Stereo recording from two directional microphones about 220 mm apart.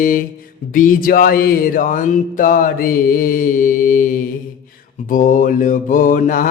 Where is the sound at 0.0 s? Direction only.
40° left (ahead or behind).